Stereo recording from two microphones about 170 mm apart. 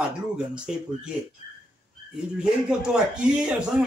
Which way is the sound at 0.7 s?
5° right (ahead or behind).